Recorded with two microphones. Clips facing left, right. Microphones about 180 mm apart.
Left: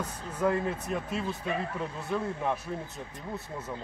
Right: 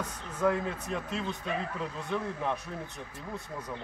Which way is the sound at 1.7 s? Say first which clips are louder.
Left 1 dB; 25° left (ahead or behind).